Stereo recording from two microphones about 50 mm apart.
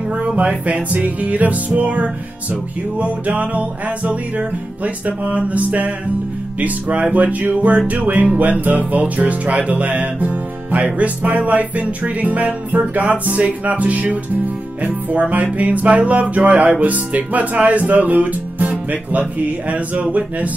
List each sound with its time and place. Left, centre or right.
0.4 s music: right
17.6 s speech: right
19.7 s music: right